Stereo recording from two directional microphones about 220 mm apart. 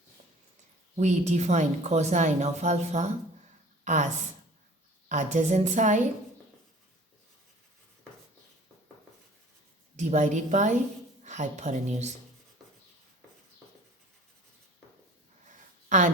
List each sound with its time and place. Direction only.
0.9 s speech: 30° right (ahead or behind)
10.0 s speech: 30° right (ahead or behind)
15.9 s a woman's voice: 35° right (ahead or behind)